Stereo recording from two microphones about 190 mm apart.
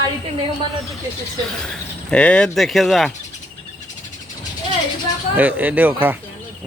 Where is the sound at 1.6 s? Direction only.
5° left (ahead or behind).